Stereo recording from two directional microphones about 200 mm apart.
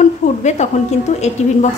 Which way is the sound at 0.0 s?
35° left (ahead or behind).